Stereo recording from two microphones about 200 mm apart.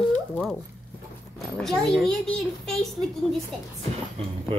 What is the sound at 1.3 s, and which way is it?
Speech, centre (ahead or behind).